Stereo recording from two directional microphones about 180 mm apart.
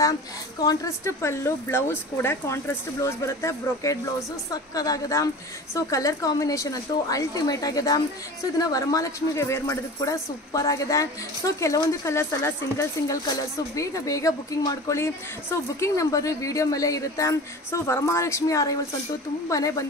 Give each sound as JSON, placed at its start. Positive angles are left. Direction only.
{"t": 0.7, "sound": "a woman's voice", "side_deg": 15}